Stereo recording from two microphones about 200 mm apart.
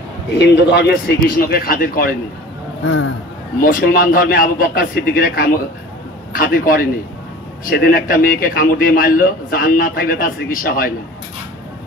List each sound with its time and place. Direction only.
0.4 s a man's voice: 55° left (ahead or behind)
2.8 s speech: 75° left (ahead or behind)
3.6 s a man's voice: 45° left (ahead or behind)